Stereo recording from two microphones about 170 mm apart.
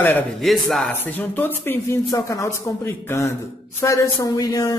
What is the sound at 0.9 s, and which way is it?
A man's voice, 10° left (ahead or behind).